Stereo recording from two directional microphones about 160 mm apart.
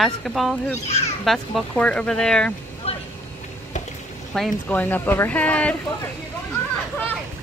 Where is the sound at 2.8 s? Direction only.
40° left (ahead or behind).